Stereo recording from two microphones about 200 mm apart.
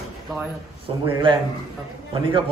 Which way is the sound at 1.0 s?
25° right (ahead or behind).